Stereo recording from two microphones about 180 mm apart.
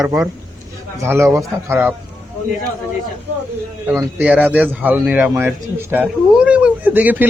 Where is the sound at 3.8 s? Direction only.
10° right (ahead or behind).